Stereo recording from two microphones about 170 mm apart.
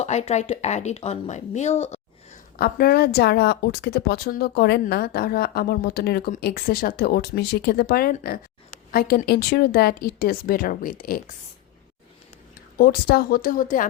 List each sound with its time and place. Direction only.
0.0 s speech: 40° left (ahead or behind)
2.6 s a woman's voice: 60° left (ahead or behind)
12.7 s speech: 65° left (ahead or behind)